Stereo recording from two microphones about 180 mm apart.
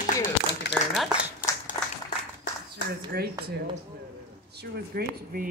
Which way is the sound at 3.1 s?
60° right (ahead or behind).